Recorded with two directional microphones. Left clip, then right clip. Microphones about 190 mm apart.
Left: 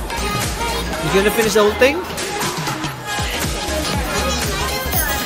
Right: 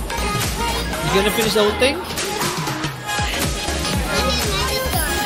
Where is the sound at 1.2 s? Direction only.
15° left (ahead or behind).